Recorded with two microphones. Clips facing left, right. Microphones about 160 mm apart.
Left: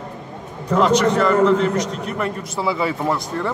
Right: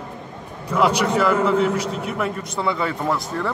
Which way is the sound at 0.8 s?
10° right (ahead or behind).